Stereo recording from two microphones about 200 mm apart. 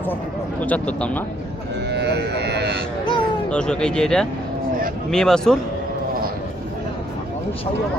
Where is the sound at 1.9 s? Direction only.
55° right (ahead or behind).